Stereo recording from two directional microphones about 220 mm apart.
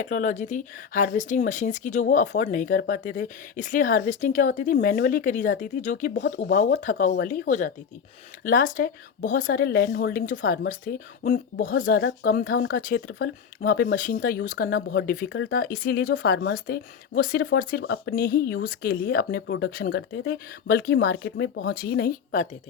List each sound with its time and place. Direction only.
0.0 s speech: 35° left (ahead or behind)